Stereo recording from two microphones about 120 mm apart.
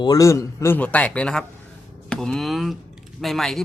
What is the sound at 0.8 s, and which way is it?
Speech, 10° left (ahead or behind).